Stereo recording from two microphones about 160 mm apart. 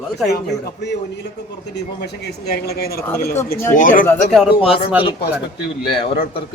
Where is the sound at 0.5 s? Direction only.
90° left.